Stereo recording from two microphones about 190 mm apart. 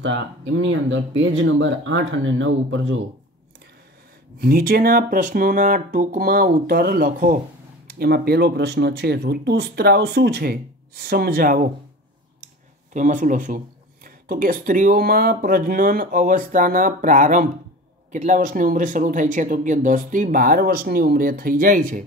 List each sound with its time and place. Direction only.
0.0 s speech: 75° right (ahead or behind)
4.4 s speech: 55° right (ahead or behind)
12.9 s speech: 40° right (ahead or behind)